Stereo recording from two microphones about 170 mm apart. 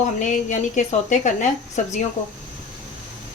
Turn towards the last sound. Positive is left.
turn(degrees=45)  # may be behind; listen again after turning